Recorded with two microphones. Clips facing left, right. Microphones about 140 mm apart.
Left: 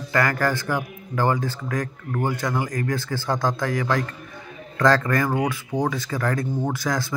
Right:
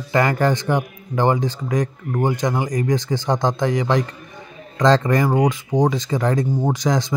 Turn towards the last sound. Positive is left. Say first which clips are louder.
# right 5 dB
turn(degrees=-20)  # may be behind; listen again after turning